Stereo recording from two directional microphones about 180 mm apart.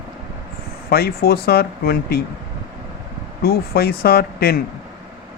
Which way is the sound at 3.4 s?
60° left (ahead or behind).